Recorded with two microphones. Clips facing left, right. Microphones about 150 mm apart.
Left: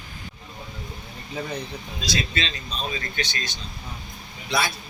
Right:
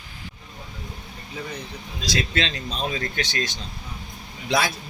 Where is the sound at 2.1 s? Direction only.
85° right.